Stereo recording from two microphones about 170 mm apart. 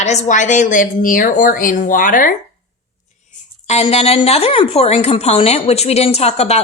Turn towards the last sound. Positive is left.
turn(degrees=40)  # may be behind; listen again after turning